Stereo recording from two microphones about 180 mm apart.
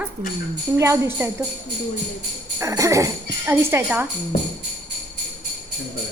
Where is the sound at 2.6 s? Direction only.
15° right (ahead or behind).